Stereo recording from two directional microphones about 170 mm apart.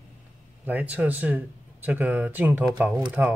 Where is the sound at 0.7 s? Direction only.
10° right (ahead or behind).